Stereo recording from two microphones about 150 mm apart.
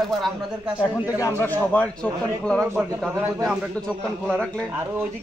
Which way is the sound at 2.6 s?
10° right (ahead or behind).